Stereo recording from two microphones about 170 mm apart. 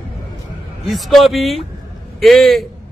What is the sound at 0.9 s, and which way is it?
A man's voice, centre (ahead or behind).